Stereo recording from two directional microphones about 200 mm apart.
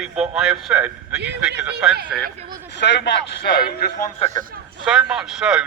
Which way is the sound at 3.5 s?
50° left (ahead or behind).